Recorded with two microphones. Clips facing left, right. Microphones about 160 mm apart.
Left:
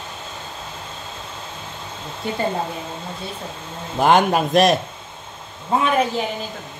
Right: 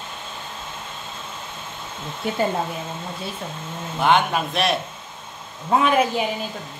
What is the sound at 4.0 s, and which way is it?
Speech, 40° left (ahead or behind).